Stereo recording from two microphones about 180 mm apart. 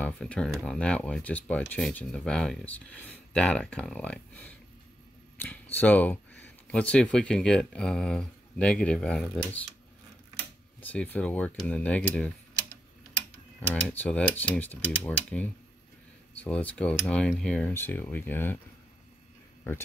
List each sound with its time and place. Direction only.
0.0 s speech: 5° left (ahead or behind)
10.8 s speech: 10° left (ahead or behind)
13.6 s speech: 10° left (ahead or behind)